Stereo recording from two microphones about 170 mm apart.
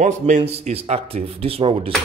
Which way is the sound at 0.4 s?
35° right (ahead or behind).